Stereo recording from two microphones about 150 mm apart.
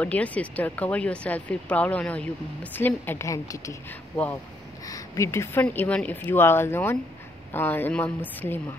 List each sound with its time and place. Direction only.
0.0 s speech: 10° left (ahead or behind)
4.8 s speech: 20° left (ahead or behind)